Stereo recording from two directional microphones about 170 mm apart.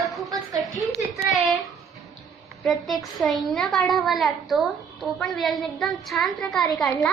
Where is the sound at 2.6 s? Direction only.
Centre (ahead or behind).